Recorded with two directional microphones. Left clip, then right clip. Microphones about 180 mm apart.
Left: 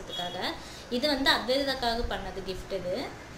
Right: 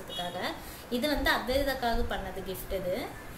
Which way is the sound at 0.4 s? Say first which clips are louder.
Left 1 dB; 15° left (ahead or behind).